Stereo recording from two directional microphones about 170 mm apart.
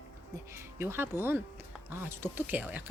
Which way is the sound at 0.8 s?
15° right (ahead or behind).